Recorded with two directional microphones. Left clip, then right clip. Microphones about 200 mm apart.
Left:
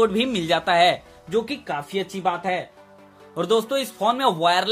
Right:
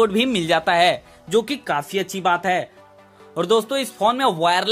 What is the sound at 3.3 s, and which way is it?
Speech, 20° right (ahead or behind).